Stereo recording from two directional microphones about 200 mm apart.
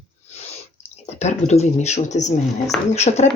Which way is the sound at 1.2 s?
35° left (ahead or behind).